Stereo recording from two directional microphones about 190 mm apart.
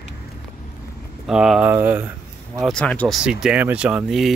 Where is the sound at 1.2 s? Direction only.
Centre (ahead or behind).